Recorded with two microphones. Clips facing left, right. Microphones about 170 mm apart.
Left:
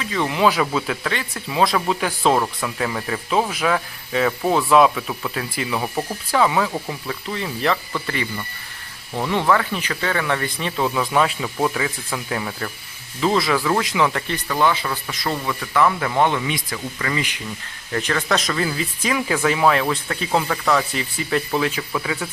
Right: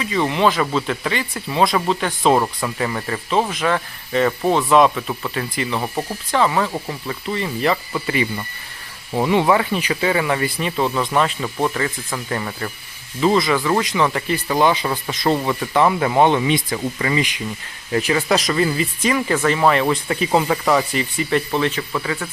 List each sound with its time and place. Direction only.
0.0 s speech: centre (ahead or behind)
2.3 s speech: 5° right (ahead or behind)
14.4 s speech: 20° right (ahead or behind)
17.9 s speech: 10° right (ahead or behind)